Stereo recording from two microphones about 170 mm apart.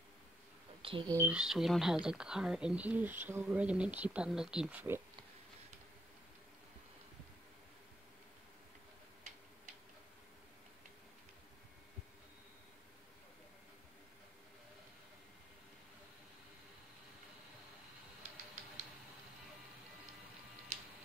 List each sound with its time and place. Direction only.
0.8 s speech: 30° right (ahead or behind)
1.1 s a woman's voice: 10° right (ahead or behind)